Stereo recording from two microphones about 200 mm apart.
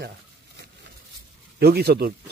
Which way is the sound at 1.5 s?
50° right (ahead or behind).